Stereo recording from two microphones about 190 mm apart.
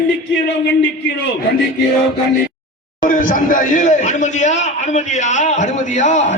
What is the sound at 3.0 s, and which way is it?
A man's voice, 45° left (ahead or behind).